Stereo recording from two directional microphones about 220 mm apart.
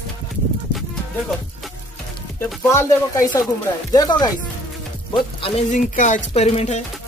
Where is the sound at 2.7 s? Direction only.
15° left (ahead or behind).